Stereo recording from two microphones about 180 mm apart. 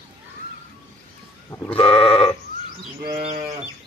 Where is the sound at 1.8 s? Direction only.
30° left (ahead or behind).